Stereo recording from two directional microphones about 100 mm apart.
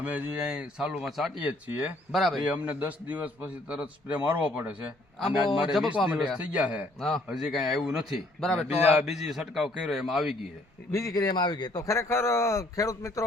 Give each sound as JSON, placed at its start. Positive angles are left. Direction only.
{"t": 0.0, "sound": "a man's voice", "side_deg": -15}
{"t": 1.5, "sound": "a man's voice", "side_deg": -15}
{"t": 5.2, "sound": "a man's voice", "side_deg": 0}
{"t": 7.3, "sound": "a man's voice", "side_deg": 0}
{"t": 8.6, "sound": "a man's voice", "side_deg": -5}
{"t": 10.9, "sound": "speech", "side_deg": 35}